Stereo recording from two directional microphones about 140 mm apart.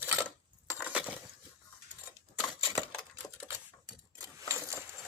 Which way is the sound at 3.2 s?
20° left (ahead or behind).